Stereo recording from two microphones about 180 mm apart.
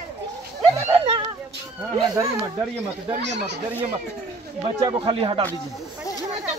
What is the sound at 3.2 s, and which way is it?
Speech, 70° right (ahead or behind).